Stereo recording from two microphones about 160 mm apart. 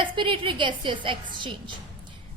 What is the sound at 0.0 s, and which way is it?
A woman's voice, 30° right (ahead or behind).